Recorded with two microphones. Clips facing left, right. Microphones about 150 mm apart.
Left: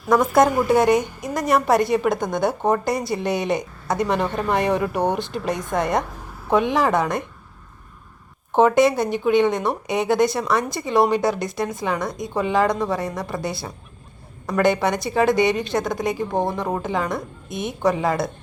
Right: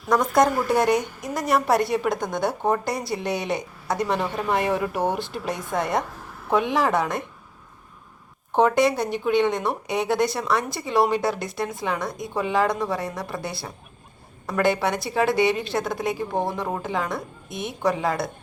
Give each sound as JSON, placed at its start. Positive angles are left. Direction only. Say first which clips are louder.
{"t": 0.0, "sound": "a woman's voice", "louder": "left 3 dB", "side_deg": 5}
{"t": 8.5, "sound": "a woman's voice", "louder": "left 3 dB", "side_deg": 0}